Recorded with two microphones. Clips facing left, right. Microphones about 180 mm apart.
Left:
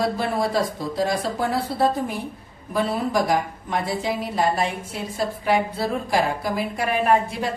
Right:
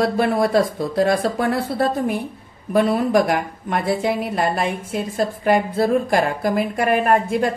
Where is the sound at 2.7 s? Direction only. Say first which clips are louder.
Right 6 dB; 60° right (ahead or behind).